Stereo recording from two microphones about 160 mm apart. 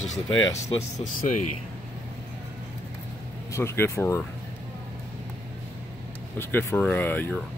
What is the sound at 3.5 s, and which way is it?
Speech, 15° left (ahead or behind).